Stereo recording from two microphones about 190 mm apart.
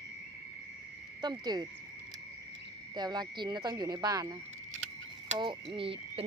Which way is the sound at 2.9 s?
20° right (ahead or behind).